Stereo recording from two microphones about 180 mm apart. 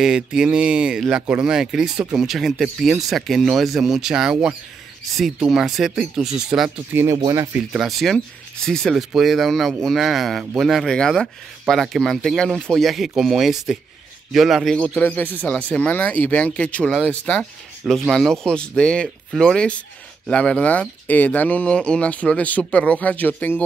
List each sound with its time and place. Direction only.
0.0 s a man's voice: 5° right (ahead or behind)
7.0 s speech: 20° right (ahead or behind)
7.5 s a man's voice: centre (ahead or behind)